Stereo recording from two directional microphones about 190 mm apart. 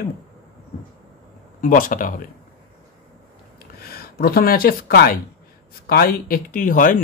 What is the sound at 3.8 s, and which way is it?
Speech, 55° left (ahead or behind).